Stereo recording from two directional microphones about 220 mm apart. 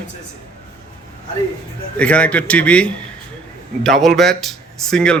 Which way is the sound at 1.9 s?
5° left (ahead or behind).